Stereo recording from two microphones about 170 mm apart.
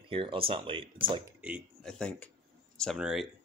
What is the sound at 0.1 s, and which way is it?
Speech, 30° right (ahead or behind).